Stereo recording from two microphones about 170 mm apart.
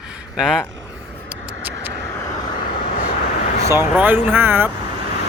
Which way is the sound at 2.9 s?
55° left (ahead or behind).